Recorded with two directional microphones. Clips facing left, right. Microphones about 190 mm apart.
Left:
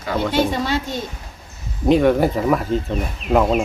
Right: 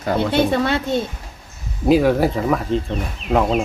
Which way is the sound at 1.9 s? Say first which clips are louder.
Even; centre (ahead or behind).